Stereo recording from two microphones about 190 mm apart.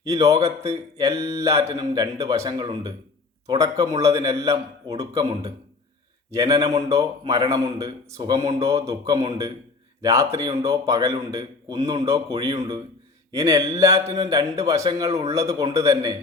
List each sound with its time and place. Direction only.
0.0 s a man's voice: 15° right (ahead or behind)
6.3 s a man's voice: 15° right (ahead or behind)
13.3 s a man's voice: 15° right (ahead or behind)